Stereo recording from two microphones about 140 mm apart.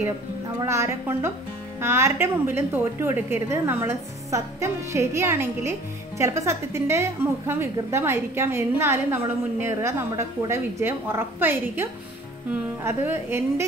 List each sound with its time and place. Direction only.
0.6 s a woman's voice: 20° right (ahead or behind)